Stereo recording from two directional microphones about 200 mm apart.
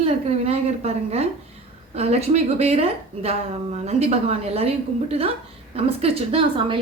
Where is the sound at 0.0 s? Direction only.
30° right (ahead or behind).